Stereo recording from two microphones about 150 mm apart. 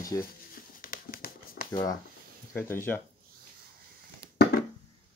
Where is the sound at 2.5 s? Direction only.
15° left (ahead or behind).